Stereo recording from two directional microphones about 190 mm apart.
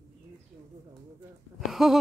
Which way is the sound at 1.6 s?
Centre (ahead or behind).